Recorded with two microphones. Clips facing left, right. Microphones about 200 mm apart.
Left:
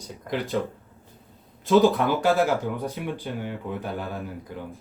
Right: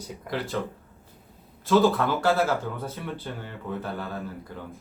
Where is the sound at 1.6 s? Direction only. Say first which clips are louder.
Left 2 dB; 15° left (ahead or behind).